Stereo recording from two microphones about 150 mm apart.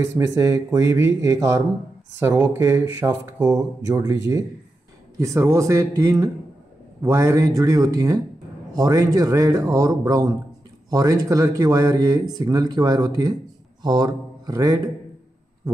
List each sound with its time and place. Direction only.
0.0 s speech: 20° right (ahead or behind)